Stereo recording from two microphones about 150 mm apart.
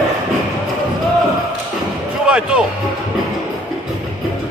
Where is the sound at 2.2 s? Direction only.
5° right (ahead or behind).